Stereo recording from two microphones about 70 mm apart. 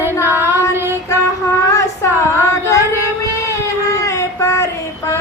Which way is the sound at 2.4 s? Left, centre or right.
Left.